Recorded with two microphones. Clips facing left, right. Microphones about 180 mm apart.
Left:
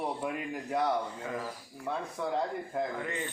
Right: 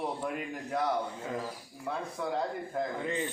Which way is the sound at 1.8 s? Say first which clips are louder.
Left 1 dB; centre (ahead or behind).